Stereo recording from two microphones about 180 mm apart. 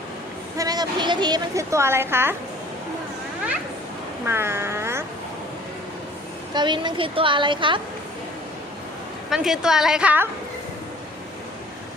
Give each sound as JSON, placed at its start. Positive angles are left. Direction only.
{"t": 0.5, "sound": "a woman's voice", "side_deg": -20}
{"t": 4.3, "sound": "a woman's voice", "side_deg": -15}
{"t": 6.5, "sound": "a woman's voice", "side_deg": -25}
{"t": 9.3, "sound": "a woman's voice", "side_deg": 0}